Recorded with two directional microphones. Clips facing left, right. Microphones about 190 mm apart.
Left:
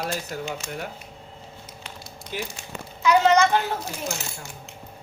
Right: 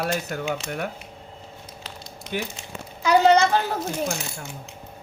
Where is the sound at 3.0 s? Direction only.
35° right (ahead or behind).